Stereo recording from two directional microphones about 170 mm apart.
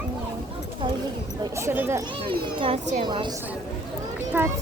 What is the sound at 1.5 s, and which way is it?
Speech, 15° right (ahead or behind).